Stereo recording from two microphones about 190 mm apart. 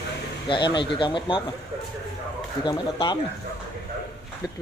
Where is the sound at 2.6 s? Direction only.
25° left (ahead or behind).